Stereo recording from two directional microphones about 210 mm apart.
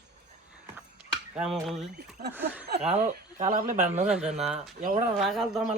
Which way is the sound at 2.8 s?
35° right (ahead or behind).